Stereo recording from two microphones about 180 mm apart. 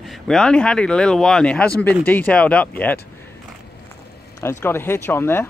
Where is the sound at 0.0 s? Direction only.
Centre (ahead or behind).